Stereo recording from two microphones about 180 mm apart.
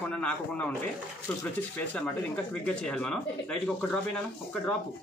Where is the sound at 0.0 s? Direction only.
5° left (ahead or behind).